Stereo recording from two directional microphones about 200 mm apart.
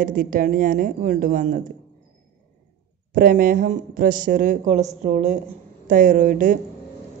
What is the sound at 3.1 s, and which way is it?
Speech, 45° right (ahead or behind).